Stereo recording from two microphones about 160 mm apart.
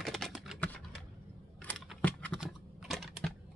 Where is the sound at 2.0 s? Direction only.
10° left (ahead or behind).